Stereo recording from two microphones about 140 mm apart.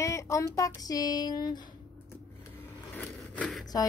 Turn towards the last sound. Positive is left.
turn(degrees=5)  # may be behind; listen again after turning